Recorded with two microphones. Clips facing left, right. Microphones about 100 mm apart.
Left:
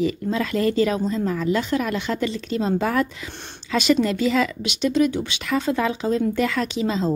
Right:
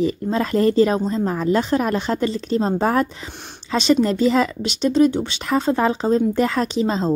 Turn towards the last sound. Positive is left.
turn(degrees=-35)  # may be behind; listen again after turning